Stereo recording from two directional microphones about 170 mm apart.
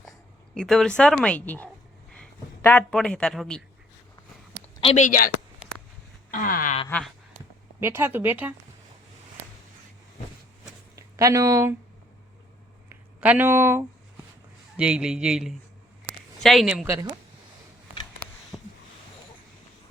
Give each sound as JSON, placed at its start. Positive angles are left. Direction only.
{"t": 0.5, "sound": "speech", "side_deg": 5}
{"t": 4.8, "sound": "speech", "side_deg": 35}
{"t": 5.0, "sound": "a woman's voice", "side_deg": 55}
{"t": 6.3, "sound": "wail", "side_deg": 50}
{"t": 7.8, "sound": "speech", "side_deg": -15}
{"t": 10.9, "sound": "speech", "side_deg": -20}
{"t": 12.9, "sound": "speech", "side_deg": -10}
{"t": 18.5, "sound": "a sound", "side_deg": 0}